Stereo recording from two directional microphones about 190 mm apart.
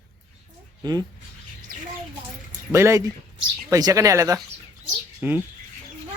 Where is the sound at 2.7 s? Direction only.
15° right (ahead or behind).